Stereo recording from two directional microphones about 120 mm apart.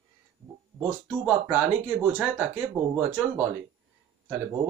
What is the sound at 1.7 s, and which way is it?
Speech, 10° right (ahead or behind).